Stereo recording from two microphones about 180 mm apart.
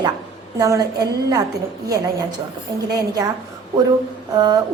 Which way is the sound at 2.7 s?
20° right (ahead or behind).